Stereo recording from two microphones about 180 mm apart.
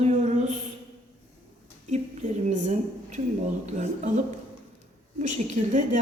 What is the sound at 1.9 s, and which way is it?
A woman's voice, 40° right (ahead or behind).